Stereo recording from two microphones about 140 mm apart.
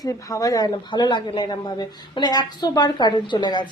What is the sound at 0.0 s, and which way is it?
A woman's voice, 25° left (ahead or behind).